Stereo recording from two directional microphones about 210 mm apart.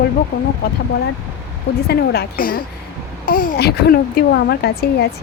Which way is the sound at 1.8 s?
50° left (ahead or behind).